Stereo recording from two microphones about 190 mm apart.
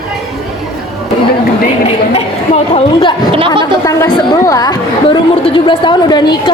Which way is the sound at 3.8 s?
15° left (ahead or behind).